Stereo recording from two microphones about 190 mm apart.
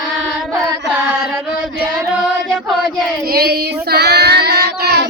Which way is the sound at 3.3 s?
55° right (ahead or behind).